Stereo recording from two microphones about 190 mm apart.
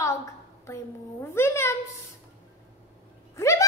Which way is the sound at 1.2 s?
15° left (ahead or behind).